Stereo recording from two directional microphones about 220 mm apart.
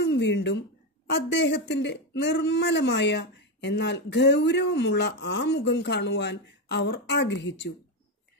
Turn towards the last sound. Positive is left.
turn(degrees=55)  # may be behind; listen again after turning